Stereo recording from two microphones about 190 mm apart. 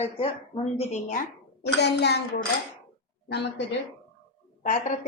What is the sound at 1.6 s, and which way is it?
Speech, 60° left (ahead or behind).